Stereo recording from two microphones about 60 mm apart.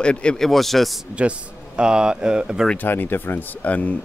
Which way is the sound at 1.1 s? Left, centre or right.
Centre.